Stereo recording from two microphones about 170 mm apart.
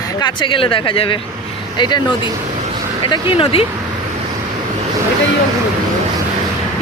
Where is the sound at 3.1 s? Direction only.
30° left (ahead or behind).